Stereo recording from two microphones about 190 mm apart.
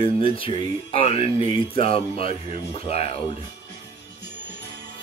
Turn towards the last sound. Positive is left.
turn(degrees=30)  # may be behind; listen again after turning